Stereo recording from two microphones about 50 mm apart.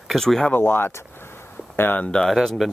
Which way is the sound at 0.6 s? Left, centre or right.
Left.